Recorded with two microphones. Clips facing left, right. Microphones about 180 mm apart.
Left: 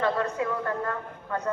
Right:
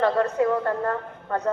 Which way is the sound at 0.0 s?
45° right (ahead or behind).